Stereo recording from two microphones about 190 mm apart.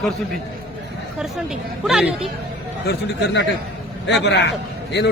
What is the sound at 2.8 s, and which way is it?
A man's voice, 60° left (ahead or behind).